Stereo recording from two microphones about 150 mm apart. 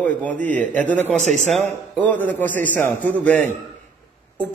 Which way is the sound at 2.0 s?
10° left (ahead or behind).